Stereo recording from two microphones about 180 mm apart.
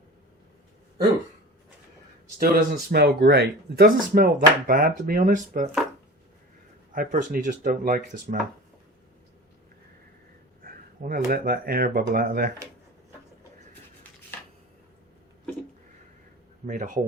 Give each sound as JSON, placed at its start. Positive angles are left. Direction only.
{"t": 2.4, "sound": "speech", "side_deg": -55}
{"t": 6.9, "sound": "speech", "side_deg": -45}
{"t": 10.6, "sound": "speech", "side_deg": -50}
{"t": 16.6, "sound": "speech", "side_deg": -45}